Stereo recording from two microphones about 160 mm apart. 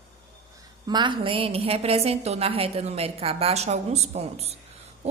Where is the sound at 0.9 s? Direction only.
30° right (ahead or behind).